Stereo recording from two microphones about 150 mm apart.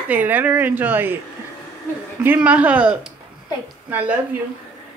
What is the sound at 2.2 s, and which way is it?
A woman's voice, 10° right (ahead or behind).